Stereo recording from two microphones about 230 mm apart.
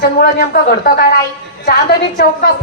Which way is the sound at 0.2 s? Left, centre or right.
Left.